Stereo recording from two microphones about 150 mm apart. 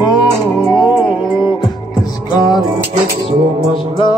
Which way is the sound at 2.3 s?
25° left (ahead or behind).